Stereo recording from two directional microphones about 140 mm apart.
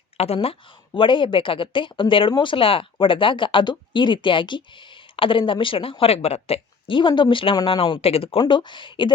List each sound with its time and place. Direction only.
0.2 s speech: 45° left (ahead or behind)